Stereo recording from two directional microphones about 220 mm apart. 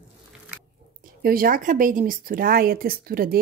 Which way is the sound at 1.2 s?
40° right (ahead or behind).